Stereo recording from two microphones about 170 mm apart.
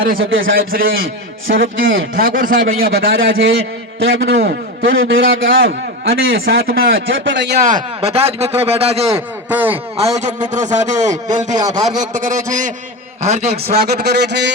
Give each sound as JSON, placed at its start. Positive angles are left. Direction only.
{"t": 0.0, "sound": "a man's voice", "side_deg": -60}
{"t": 4.0, "sound": "a man's voice", "side_deg": -90}
{"t": 6.1, "sound": "a man's voice", "side_deg": -65}
{"t": 7.6, "sound": "a man's voice", "side_deg": -50}
{"t": 8.0, "sound": "speech", "side_deg": -35}
{"t": 9.5, "sound": "speech", "side_deg": -10}
{"t": 10.5, "sound": "a man's voice", "side_deg": -45}
{"t": 11.5, "sound": "a man's voice", "side_deg": -25}
{"t": 12.1, "sound": "a man's voice", "side_deg": -45}
{"t": 13.7, "sound": "a man's voice", "side_deg": -70}